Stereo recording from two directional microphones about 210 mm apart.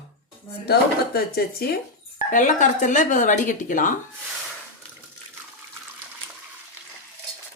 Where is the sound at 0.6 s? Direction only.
50° left (ahead or behind).